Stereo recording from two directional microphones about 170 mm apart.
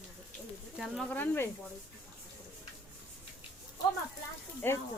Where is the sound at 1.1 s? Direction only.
10° left (ahead or behind).